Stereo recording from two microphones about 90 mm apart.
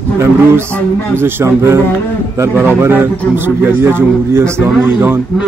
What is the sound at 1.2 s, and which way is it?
A man's voice, 30° right (ahead or behind).